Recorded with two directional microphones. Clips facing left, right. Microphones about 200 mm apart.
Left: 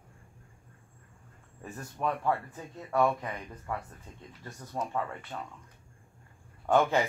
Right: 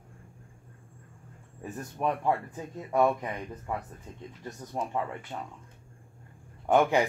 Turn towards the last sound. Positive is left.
turn(degrees=-15)  # may be behind; listen again after turning